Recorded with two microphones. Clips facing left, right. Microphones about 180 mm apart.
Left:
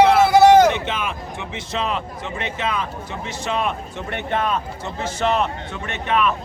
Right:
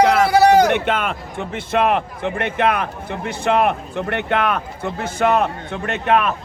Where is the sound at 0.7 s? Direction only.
60° right (ahead or behind).